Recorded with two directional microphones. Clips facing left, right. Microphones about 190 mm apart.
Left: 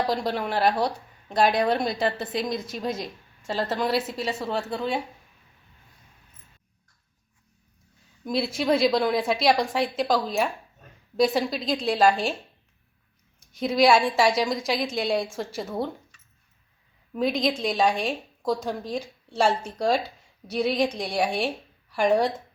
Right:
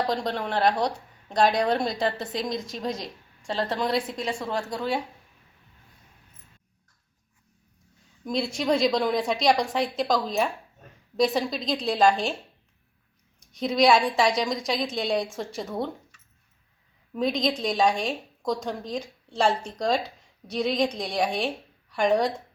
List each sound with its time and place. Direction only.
0.0 s a woman's voice: 5° left (ahead or behind)
8.2 s a woman's voice: 5° left (ahead or behind)
13.5 s a woman's voice: centre (ahead or behind)
17.2 s a woman's voice: 5° left (ahead or behind)